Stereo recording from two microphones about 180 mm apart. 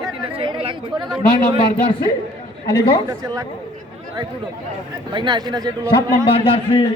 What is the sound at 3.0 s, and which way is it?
Speech, 20° right (ahead or behind).